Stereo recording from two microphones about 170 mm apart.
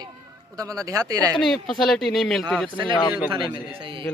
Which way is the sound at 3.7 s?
30° right (ahead or behind).